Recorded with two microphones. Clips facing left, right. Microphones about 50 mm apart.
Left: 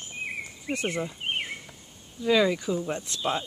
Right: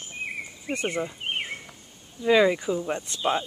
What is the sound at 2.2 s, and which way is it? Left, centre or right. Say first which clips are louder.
Speech: right 3 dB; centre.